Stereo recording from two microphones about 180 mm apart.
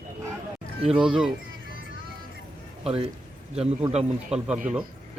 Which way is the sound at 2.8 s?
30° right (ahead or behind).